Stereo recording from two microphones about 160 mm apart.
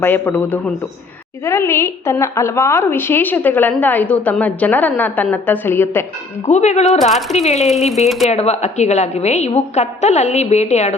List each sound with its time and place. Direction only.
0.0 s a woman's voice: 10° left (ahead or behind)
6.4 s a woman's voice: 45° left (ahead or behind)
7.1 s speech: centre (ahead or behind)
7.3 s a woman's voice: 45° left (ahead or behind)